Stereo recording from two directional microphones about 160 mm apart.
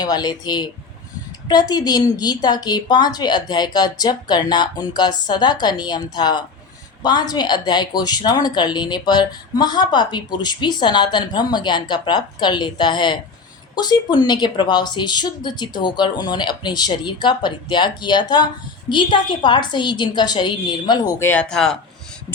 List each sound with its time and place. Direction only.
0.0 s speech: 25° left (ahead or behind)
21.2 s speech: 10° left (ahead or behind)